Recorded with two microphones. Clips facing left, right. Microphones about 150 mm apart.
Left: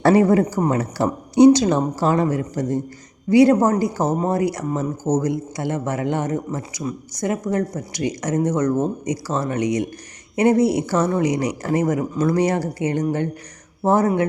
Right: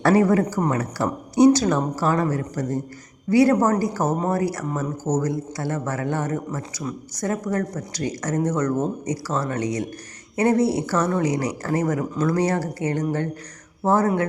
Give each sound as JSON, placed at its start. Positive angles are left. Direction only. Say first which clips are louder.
{"t": 0.0, "sound": "speech", "louder": "left 3 dB", "side_deg": 25}